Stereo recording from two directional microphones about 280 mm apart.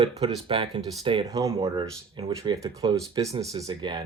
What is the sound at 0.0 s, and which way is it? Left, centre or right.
Speech, centre.